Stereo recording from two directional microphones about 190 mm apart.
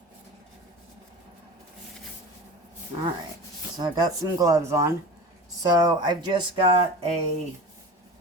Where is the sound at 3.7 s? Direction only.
20° right (ahead or behind).